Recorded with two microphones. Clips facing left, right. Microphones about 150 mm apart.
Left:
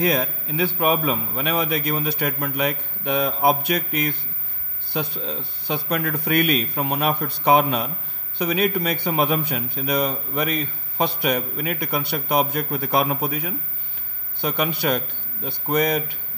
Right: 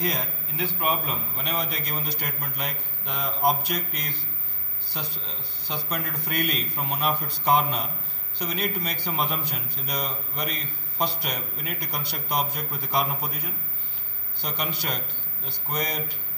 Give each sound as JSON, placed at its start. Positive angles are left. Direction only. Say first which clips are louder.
{"t": 0.0, "sound": "a man's voice", "louder": "left 8 dB", "side_deg": 70}